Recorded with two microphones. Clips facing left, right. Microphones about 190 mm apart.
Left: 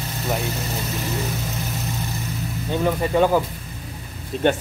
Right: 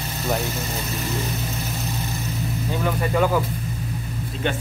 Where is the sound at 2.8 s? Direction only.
20° left (ahead or behind).